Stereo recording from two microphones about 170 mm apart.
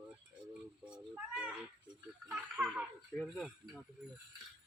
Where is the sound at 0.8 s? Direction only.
5° right (ahead or behind).